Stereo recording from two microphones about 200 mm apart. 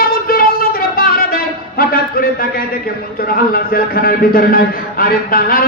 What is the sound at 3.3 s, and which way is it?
A man's voice, 50° left (ahead or behind).